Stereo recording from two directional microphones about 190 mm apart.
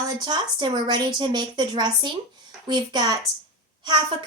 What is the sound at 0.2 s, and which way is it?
A woman's voice, 25° right (ahead or behind).